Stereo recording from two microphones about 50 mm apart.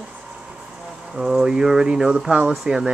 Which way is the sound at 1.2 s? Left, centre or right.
Centre.